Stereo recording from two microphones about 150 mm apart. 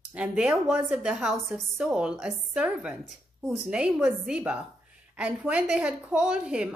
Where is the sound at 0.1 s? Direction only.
10° right (ahead or behind).